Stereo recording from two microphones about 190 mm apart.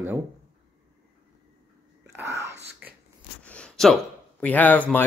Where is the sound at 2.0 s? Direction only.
15° right (ahead or behind).